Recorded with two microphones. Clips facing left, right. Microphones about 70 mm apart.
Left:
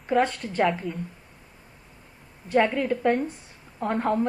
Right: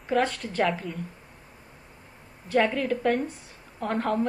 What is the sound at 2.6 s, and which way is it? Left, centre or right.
Speech, centre.